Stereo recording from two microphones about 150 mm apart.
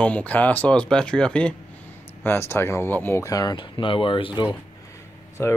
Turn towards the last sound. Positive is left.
turn(degrees=20)  # may be behind; listen again after turning